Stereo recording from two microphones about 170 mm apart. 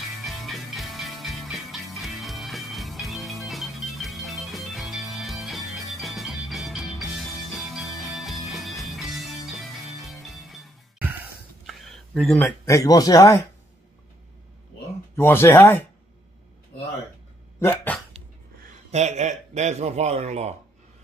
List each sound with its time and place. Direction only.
0.2 s music: centre (ahead or behind)
11.6 s speech: centre (ahead or behind); by 13.4 s 20° left (ahead or behind)
15.1 s speech: 15° left (ahead or behind)
17.6 s speech: 15° left (ahead or behind)
18.9 s a man's voice: 40° right (ahead or behind)